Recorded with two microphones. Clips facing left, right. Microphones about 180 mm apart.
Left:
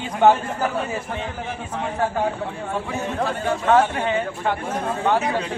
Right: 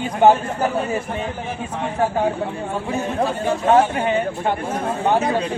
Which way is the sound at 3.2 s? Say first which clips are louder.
Right 2 dB; 25° right (ahead or behind).